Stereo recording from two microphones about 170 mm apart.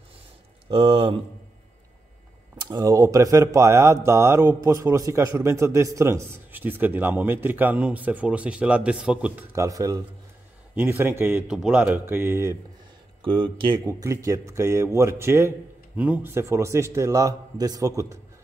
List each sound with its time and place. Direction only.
0.7 s speech: 30° right (ahead or behind)
2.5 s speech: 25° right (ahead or behind)
11.4 s speech: 5° right (ahead or behind)
13.2 s speech: 30° right (ahead or behind)